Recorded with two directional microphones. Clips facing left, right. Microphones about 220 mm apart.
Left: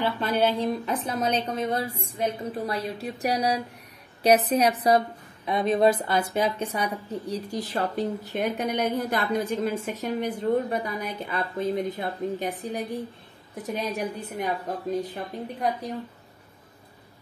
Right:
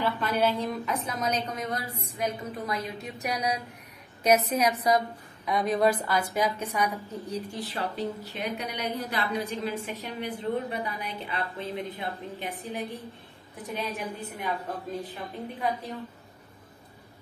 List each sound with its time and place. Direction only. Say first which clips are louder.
0.0 s a woman's voice: left 2 dB; 30° left (ahead or behind)